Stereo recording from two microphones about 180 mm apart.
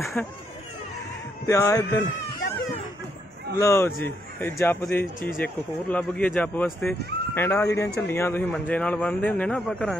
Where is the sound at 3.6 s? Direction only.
15° left (ahead or behind).